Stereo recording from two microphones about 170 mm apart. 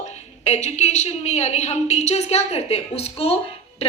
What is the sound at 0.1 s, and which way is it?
A woman's voice, 40° left (ahead or behind).